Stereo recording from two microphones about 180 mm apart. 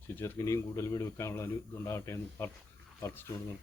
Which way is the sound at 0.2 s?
15° left (ahead or behind).